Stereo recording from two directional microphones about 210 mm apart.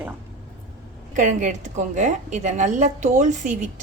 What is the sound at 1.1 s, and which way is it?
A woman's voice, 35° right (ahead or behind).